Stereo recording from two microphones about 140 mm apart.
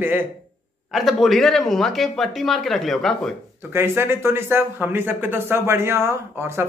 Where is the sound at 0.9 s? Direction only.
Centre (ahead or behind).